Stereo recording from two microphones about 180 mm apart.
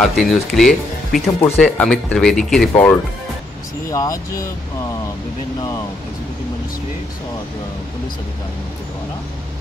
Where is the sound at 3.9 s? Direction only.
20° left (ahead or behind).